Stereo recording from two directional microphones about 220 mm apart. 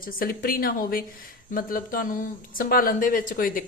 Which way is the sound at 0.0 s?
40° left (ahead or behind).